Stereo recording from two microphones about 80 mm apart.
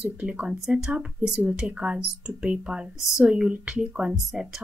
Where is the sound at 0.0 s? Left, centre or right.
Centre.